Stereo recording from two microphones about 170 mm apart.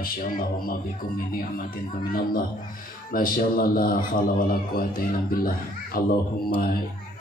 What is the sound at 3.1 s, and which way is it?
Speech, 60° left (ahead or behind).